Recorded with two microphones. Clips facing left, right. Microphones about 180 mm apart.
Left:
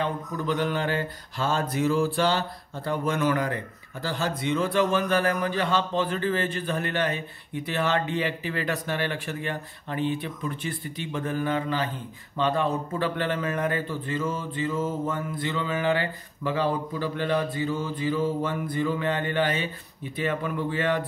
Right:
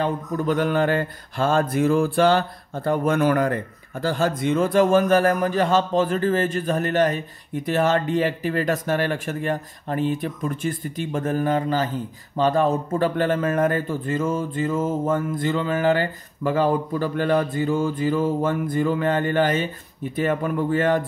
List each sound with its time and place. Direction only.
0.0 s mantra: 50° right (ahead or behind)